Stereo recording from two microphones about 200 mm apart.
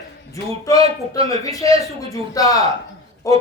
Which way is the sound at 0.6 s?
15° left (ahead or behind).